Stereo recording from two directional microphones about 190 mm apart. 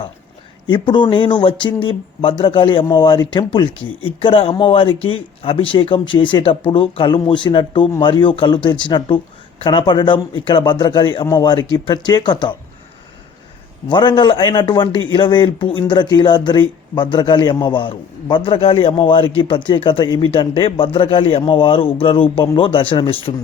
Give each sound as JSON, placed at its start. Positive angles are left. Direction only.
{"t": 0.7, "sound": "speech", "side_deg": 25}
{"t": 13.8, "sound": "speech", "side_deg": 25}